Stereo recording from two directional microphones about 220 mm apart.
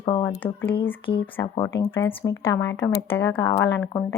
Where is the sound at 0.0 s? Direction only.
25° left (ahead or behind).